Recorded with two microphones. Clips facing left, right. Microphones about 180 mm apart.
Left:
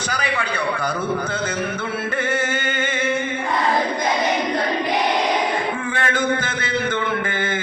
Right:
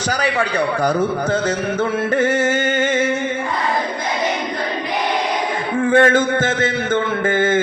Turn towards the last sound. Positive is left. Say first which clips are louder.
# right 7 dB
turn(degrees=-45)  # may be behind; listen again after turning